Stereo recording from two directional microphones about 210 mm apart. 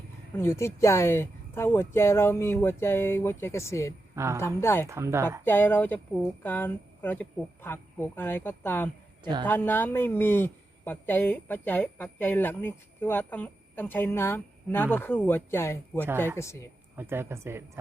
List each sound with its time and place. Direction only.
0.3 s a woman's voice: 15° left (ahead or behind)
4.1 s a woman's voice: 15° right (ahead or behind)
4.4 s a woman's voice: 10° left (ahead or behind)
4.9 s speech: 15° right (ahead or behind)
5.5 s a woman's voice: 10° left (ahead or behind)
9.2 s speech: 20° right (ahead or behind)
9.5 s a woman's voice: 10° left (ahead or behind)
17.0 s speech: 10° right (ahead or behind)